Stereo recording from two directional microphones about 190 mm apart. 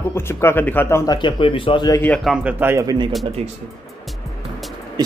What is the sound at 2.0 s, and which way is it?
Speech, 5° left (ahead or behind).